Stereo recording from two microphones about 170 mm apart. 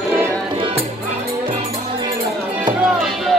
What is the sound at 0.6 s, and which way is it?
Music, 35° right (ahead or behind).